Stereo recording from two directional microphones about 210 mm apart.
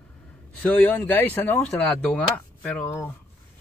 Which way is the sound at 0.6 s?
5° left (ahead or behind).